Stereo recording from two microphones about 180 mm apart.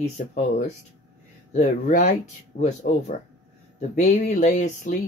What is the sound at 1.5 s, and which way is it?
Speech, 40° left (ahead or behind).